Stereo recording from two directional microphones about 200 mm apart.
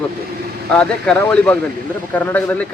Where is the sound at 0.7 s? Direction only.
5° left (ahead or behind).